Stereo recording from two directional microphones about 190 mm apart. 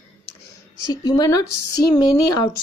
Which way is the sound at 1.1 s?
20° left (ahead or behind).